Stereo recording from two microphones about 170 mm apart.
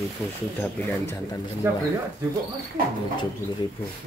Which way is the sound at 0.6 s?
10° left (ahead or behind).